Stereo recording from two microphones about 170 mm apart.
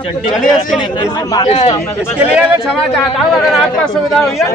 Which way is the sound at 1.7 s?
15° left (ahead or behind).